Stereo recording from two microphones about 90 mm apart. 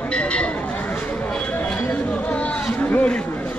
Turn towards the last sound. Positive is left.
turn(degrees=15)  # may be behind; listen again after turning